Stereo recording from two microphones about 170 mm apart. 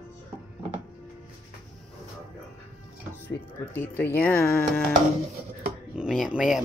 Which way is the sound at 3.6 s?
10° left (ahead or behind).